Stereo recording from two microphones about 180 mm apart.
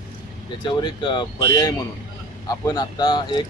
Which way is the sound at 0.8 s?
25° left (ahead or behind).